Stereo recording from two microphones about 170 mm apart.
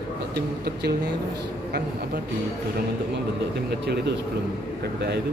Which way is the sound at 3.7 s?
75° right (ahead or behind).